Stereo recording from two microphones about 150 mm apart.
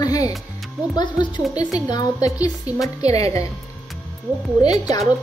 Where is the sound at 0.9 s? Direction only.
30° left (ahead or behind).